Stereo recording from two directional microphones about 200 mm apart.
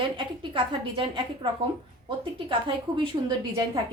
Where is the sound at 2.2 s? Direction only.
25° right (ahead or behind).